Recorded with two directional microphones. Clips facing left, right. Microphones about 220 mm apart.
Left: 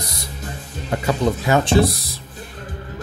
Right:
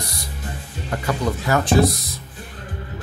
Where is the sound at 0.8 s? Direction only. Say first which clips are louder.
Left 4 dB; 20° left (ahead or behind).